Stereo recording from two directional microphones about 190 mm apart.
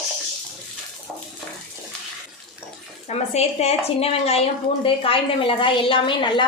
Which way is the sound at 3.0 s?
35° left (ahead or behind).